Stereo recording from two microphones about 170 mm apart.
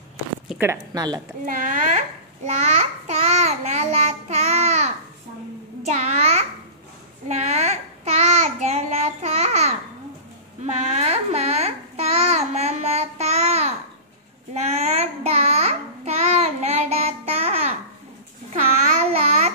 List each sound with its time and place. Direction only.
0.5 s speech: 10° right (ahead or behind)
0.9 s a woman's voice: 25° right (ahead or behind)
1.4 s speech: 50° right (ahead or behind)
3.1 s babbling: 40° right (ahead or behind)
5.8 s a child's voice: 40° right (ahead or behind)
7.2 s child singing: 40° right (ahead or behind)
10.6 s a child's voice: 40° right (ahead or behind)
14.5 s child singing: 40° right (ahead or behind)
18.5 s babbling: 40° right (ahead or behind)